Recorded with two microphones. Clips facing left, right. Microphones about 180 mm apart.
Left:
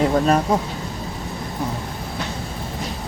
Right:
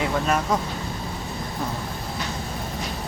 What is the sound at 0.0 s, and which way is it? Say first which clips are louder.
Speech: left 6 dB; 35° left (ahead or behind).